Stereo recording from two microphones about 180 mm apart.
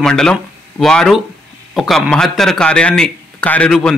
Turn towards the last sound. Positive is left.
turn(degrees=5)  # may be behind; listen again after turning